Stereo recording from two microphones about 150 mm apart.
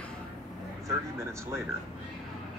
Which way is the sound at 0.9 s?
20° right (ahead or behind).